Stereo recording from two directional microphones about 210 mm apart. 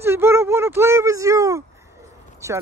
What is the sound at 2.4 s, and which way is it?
Speech, 15° right (ahead or behind).